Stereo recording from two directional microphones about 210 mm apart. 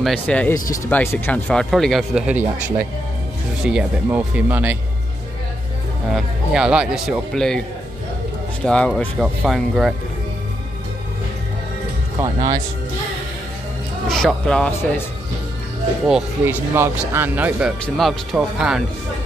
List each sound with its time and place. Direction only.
0.0 s speech: 5° left (ahead or behind)
6.1 s speech: 5° right (ahead or behind)
8.6 s speech: 5° left (ahead or behind)
12.2 s speech: 15° right (ahead or behind)
14.0 s speech: 5° left (ahead or behind)
16.1 s speech: 5° right (ahead or behind)